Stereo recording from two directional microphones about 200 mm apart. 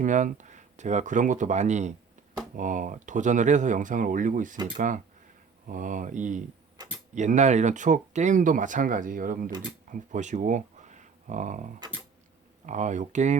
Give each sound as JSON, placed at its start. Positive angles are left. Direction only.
{"t": 0.0, "sound": "speech", "side_deg": -40}
{"t": 5.6, "sound": "speech", "side_deg": -40}